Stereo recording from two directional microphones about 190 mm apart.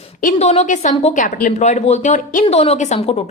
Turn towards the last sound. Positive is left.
turn(degrees=30)  # may be behind; listen again after turning